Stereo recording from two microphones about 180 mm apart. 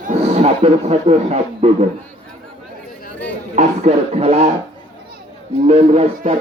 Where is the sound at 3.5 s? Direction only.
40° right (ahead or behind).